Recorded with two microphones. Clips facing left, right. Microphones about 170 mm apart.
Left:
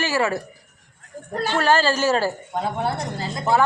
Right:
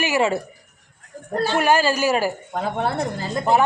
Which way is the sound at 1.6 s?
15° right (ahead or behind).